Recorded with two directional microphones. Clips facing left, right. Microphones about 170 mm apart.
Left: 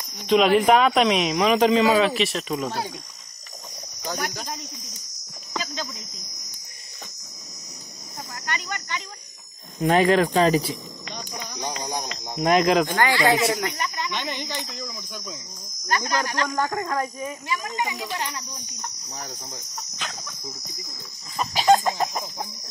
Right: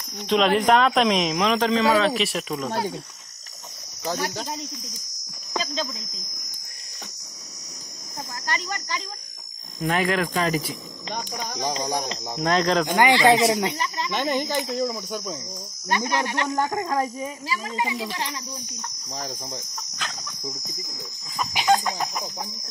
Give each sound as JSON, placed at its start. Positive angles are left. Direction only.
{"t": 0.3, "sound": "speech", "side_deg": 5}
{"t": 1.6, "sound": "speech", "side_deg": 15}
{"t": 2.0, "sound": "speech", "side_deg": 0}
{"t": 4.0, "sound": "cricket", "side_deg": -30}
{"t": 8.5, "sound": "cricket", "side_deg": -35}
{"t": 9.8, "sound": "speech", "side_deg": 30}
{"t": 11.6, "sound": "cricket", "side_deg": -35}
{"t": 12.4, "sound": "speech", "side_deg": 10}
{"t": 12.8, "sound": "speech", "side_deg": -15}
{"t": 14.1, "sound": "speech", "side_deg": -45}
{"t": 16.2, "sound": "speech", "side_deg": -25}